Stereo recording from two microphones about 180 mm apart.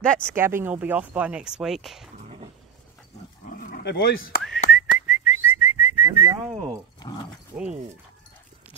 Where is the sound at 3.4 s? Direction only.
50° left (ahead or behind).